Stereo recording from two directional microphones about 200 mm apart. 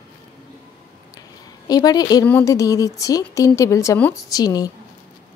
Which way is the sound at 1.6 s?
20° left (ahead or behind).